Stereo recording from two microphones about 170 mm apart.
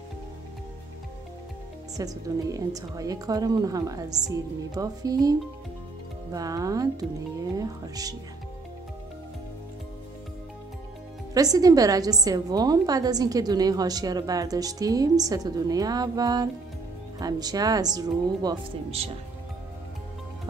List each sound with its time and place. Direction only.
2.0 s a woman's voice: 20° right (ahead or behind)
11.3 s a woman's voice: 20° right (ahead or behind)
18.9 s speech: 35° right (ahead or behind)